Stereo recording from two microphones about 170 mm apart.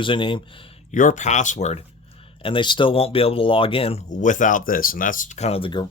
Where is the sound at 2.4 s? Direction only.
30° left (ahead or behind).